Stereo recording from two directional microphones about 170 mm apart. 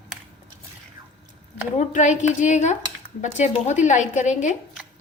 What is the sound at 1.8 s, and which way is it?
A woman's voice, 45° left (ahead or behind).